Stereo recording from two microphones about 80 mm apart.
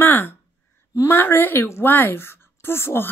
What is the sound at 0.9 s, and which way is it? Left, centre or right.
A woman's voice, left.